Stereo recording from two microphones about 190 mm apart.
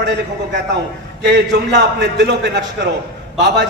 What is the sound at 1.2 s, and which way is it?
A man's voice, 65° right (ahead or behind).